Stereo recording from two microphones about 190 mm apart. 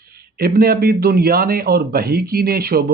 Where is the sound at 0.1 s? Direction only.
55° right (ahead or behind).